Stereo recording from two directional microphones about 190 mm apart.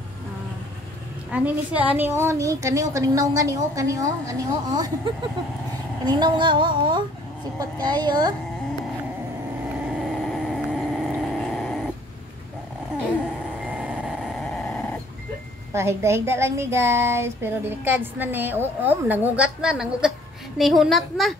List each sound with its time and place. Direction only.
1.3 s a woman's voice: 10° right (ahead or behind)
6.0 s speech: 25° right (ahead or behind)
10.0 s vehicle: centre (ahead or behind)
13.7 s dog: 5° right (ahead or behind)
15.7 s a woman's voice: 15° right (ahead or behind)